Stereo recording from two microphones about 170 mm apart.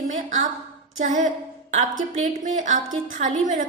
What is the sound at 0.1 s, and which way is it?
A woman's voice, 45° right (ahead or behind).